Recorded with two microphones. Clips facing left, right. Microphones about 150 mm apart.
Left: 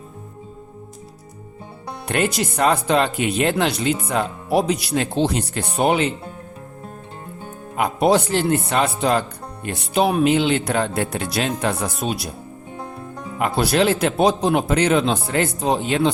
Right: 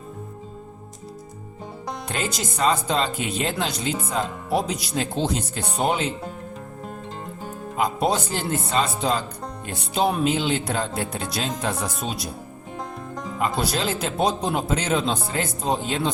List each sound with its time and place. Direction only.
2.0 s speech: 65° left (ahead or behind)
7.8 s speech: 65° left (ahead or behind)
13.4 s speech: 65° left (ahead or behind)